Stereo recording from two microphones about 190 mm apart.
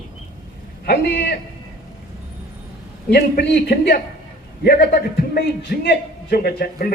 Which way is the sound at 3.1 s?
55° left (ahead or behind).